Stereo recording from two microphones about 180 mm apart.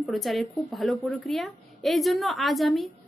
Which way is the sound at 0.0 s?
Centre (ahead or behind).